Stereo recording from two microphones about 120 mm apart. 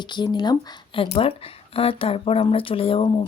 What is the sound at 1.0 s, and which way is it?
Speech, 50° left (ahead or behind).